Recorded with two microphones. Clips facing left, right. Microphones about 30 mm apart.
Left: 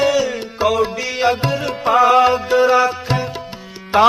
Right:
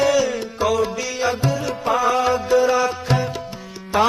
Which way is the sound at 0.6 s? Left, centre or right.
Left.